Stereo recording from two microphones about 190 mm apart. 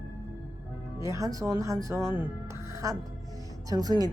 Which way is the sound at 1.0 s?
15° right (ahead or behind).